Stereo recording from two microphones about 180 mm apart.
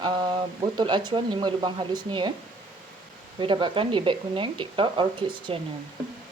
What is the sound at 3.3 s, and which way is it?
Speech, 25° right (ahead or behind).